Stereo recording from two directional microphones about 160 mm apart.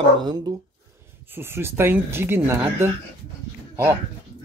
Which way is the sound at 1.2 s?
15° right (ahead or behind).